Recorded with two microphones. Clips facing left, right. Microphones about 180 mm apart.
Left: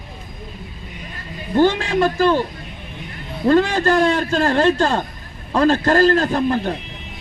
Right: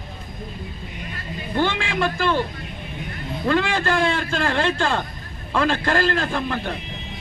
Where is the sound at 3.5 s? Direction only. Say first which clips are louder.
Left 6 dB; 40° left (ahead or behind).